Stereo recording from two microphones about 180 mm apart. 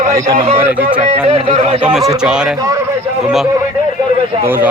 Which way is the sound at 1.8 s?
5° right (ahead or behind).